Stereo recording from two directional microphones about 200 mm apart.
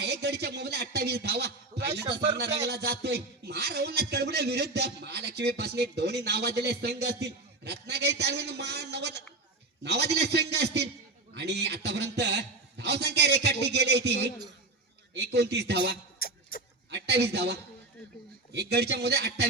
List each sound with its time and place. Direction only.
0.0 s a man's voice: 55° right (ahead or behind)
16.2 s a sound: 50° left (ahead or behind)
16.9 s a man's voice: 60° right (ahead or behind)